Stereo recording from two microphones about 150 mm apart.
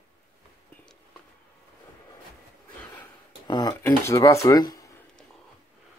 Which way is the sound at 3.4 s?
30° left (ahead or behind).